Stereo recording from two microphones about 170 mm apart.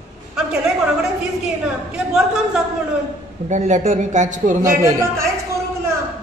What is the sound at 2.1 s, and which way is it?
Speech, 5° right (ahead or behind).